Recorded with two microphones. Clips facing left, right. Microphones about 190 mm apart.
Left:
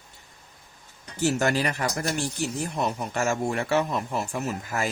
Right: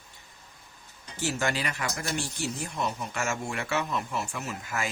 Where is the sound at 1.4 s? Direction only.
40° left (ahead or behind).